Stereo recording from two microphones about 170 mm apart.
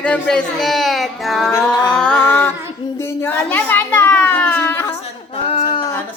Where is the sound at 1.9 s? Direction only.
5° left (ahead or behind).